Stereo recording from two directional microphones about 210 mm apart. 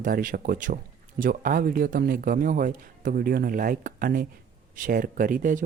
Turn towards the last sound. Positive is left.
turn(degrees=-40)  # may be behind; listen again after turning